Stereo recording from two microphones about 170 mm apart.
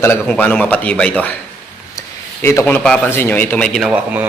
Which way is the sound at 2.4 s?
10° left (ahead or behind).